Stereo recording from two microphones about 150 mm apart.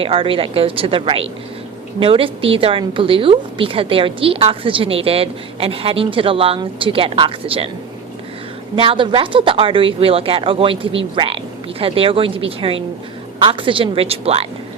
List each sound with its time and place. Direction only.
0.0 s a woman's voice: 35° right (ahead or behind)
8.7 s a woman's voice: 35° right (ahead or behind)